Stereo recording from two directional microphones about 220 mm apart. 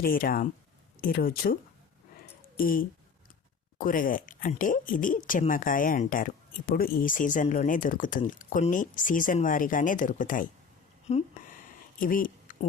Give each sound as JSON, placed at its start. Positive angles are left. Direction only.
{"t": 0.0, "sound": "a woman's voice", "side_deg": 40}
{"t": 2.6, "sound": "a woman's voice", "side_deg": 40}
{"t": 11.1, "sound": "a sound", "side_deg": 40}